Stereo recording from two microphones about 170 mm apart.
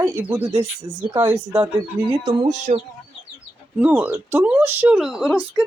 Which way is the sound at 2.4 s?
45° right (ahead or behind).